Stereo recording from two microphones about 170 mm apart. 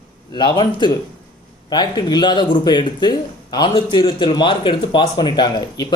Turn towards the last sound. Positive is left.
turn(degrees=25)  # may be behind; listen again after turning